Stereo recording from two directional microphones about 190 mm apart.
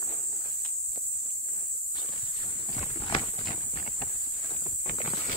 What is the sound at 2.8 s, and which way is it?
Walk, 30° left (ahead or behind).